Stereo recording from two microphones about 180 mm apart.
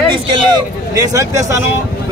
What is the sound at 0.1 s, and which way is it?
Speech, 25° right (ahead or behind).